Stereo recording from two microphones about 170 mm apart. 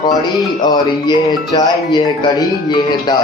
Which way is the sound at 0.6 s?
25° left (ahead or behind).